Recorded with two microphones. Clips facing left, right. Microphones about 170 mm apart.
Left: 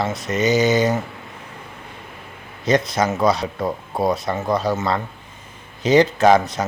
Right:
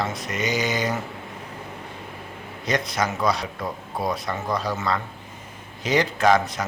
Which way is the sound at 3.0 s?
25° left (ahead or behind).